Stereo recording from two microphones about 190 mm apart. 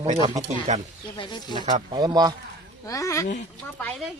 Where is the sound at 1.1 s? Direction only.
25° left (ahead or behind).